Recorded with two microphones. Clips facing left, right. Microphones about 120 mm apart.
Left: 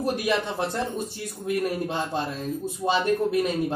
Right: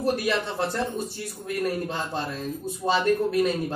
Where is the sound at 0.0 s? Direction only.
15° left (ahead or behind).